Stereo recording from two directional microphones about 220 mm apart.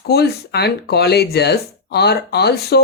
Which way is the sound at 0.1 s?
45° left (ahead or behind).